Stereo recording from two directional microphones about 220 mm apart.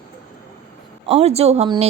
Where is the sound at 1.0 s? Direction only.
30° right (ahead or behind).